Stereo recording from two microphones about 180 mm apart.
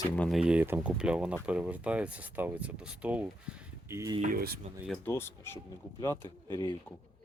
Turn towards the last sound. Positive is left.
turn(degrees=20)  # may be behind; listen again after turning